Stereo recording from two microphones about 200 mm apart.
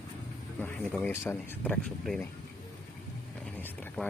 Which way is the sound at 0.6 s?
5° left (ahead or behind).